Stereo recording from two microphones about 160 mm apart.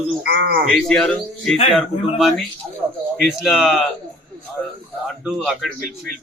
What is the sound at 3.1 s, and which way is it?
Speech, centre (ahead or behind).